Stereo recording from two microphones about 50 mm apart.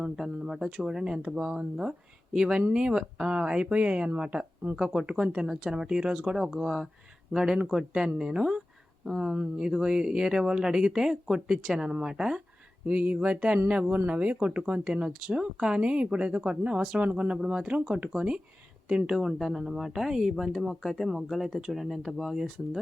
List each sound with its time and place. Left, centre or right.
0.0 s speech: centre
12.8 s speech: right; by 22.8 s centre